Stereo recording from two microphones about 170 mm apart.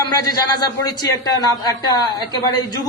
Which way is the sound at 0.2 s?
20° left (ahead or behind).